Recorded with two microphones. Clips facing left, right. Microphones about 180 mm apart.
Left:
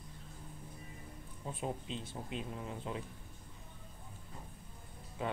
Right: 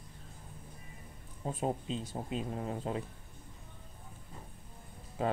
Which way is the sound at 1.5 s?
40° right (ahead or behind).